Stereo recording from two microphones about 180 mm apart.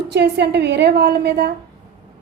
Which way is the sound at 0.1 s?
65° right (ahead or behind).